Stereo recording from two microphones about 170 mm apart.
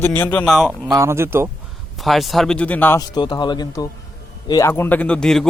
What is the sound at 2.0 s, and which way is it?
A man's voice, centre (ahead or behind).